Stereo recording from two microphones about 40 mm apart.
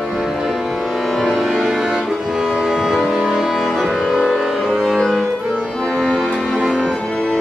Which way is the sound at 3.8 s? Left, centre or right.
Centre.